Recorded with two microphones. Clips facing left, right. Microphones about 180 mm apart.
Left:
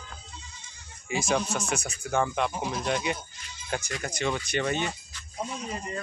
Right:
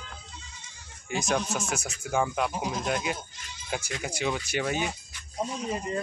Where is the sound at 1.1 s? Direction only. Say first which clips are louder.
Left 1 dB; centre (ahead or behind).